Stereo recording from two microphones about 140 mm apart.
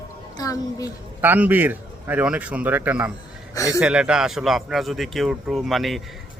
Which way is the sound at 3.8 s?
5° right (ahead or behind).